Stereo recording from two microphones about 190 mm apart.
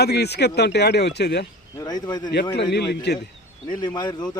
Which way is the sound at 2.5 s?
60° left (ahead or behind).